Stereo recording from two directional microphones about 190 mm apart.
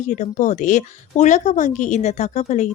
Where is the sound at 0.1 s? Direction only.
40° left (ahead or behind).